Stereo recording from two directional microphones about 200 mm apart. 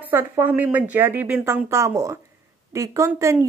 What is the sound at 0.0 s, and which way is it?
Speech, 10° right (ahead or behind).